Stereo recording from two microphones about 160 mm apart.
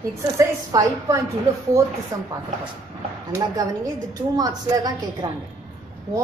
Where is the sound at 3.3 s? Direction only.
20° right (ahead or behind).